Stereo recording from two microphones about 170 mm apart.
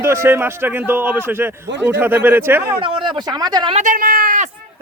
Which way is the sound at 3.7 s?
50° right (ahead or behind).